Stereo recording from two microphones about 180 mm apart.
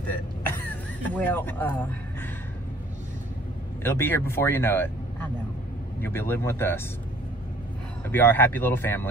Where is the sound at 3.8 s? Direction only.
10° left (ahead or behind).